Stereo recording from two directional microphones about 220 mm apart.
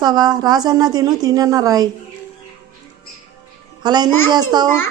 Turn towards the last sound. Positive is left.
turn(degrees=-20)  # may be behind; listen again after turning